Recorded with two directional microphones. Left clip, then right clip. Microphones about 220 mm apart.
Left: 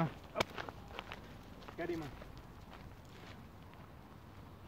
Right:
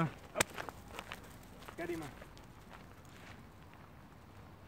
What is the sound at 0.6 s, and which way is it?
Walk, 30° right (ahead or behind).